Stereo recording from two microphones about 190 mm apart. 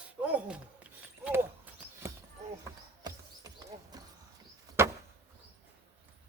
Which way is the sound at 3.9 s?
20° right (ahead or behind).